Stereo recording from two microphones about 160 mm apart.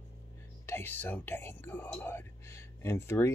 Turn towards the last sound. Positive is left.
turn(degrees=15)  # may be behind; listen again after turning